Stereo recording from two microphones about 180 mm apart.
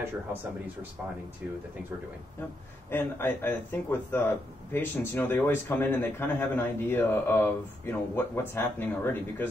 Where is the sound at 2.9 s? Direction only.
10° left (ahead or behind).